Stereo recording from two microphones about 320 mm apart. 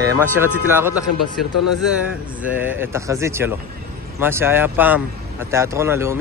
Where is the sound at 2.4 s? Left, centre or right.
Centre.